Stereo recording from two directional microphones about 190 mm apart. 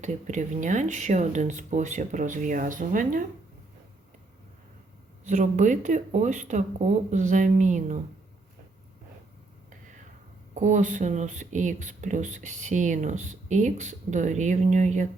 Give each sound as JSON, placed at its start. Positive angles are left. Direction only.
{"t": 0.0, "sound": "speech", "side_deg": -40}
{"t": 5.2, "sound": "speech", "side_deg": -40}
{"t": 10.5, "sound": "speech", "side_deg": -40}